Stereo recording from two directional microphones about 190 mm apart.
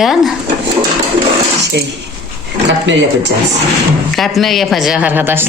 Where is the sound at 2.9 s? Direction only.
70° right (ahead or behind).